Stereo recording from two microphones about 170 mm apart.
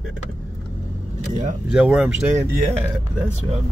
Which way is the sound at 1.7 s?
5° right (ahead or behind).